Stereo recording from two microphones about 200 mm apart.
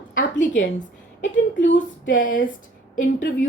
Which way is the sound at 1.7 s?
40° left (ahead or behind).